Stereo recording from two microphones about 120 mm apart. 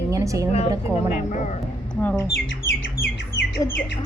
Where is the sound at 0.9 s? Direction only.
75° left (ahead or behind).